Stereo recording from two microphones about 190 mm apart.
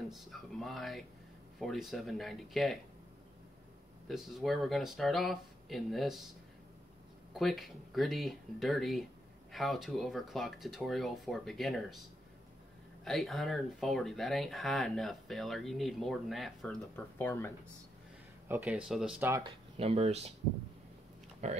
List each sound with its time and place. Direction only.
0.1 s speech: centre (ahead or behind)
4.1 s speech: centre (ahead or behind)
7.3 s speech: centre (ahead or behind)
13.0 s speech: centre (ahead or behind)
18.5 s speech: 5° right (ahead or behind)
19.4 s speech: 35° right (ahead or behind)
21.4 s speech: 35° right (ahead or behind)